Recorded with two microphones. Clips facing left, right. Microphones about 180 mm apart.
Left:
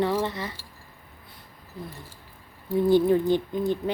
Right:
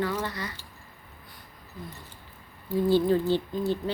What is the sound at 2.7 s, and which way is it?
Speech, 20° left (ahead or behind).